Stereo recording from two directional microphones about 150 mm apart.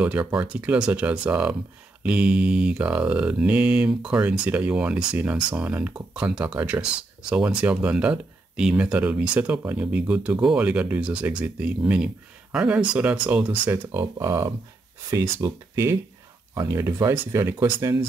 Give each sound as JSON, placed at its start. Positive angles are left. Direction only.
{"t": 0.0, "sound": "speech", "side_deg": -10}
{"t": 14.1, "sound": "speech", "side_deg": -20}